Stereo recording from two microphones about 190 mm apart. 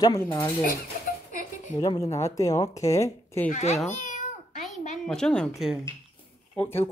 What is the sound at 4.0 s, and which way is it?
Meow, 40° left (ahead or behind).